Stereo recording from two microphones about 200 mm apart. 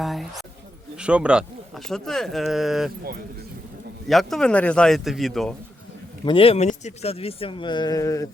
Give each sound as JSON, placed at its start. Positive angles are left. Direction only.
{"t": 0.0, "sound": "speech", "side_deg": 0}
{"t": 4.1, "sound": "speech", "side_deg": 0}
{"t": 6.2, "sound": "speech", "side_deg": 25}